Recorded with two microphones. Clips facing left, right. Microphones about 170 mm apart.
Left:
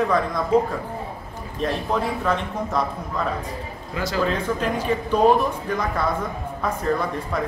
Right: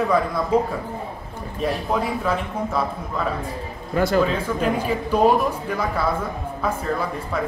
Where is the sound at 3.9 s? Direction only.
55° right (ahead or behind).